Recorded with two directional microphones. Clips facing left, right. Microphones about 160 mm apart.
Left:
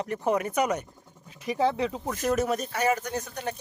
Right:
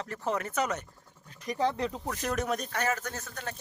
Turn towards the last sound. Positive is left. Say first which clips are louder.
# left 6 dB
turn(degrees=15)  # may be behind; listen again after turning